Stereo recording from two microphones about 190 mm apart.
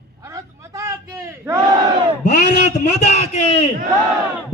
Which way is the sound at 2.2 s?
40° left (ahead or behind).